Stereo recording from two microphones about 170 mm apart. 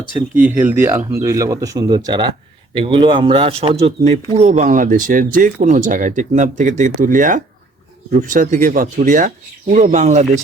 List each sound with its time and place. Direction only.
0.3 s speech: 10° right (ahead or behind); by 10.2 s 45° right (ahead or behind)